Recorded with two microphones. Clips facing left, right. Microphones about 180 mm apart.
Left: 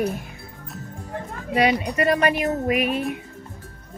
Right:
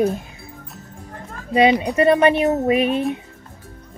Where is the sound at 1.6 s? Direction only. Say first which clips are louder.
Right 5 dB; 25° right (ahead or behind).